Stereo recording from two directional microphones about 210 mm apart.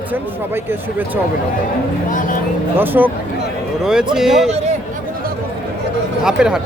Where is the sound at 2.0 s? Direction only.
40° left (ahead or behind).